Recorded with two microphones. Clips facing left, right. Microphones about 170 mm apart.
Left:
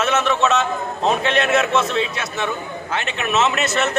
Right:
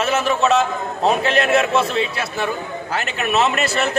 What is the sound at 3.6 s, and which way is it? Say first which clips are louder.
Speech: even; 35° right (ahead or behind).